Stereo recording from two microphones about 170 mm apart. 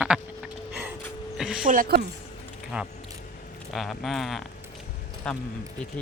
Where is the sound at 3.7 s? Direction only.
Centre (ahead or behind).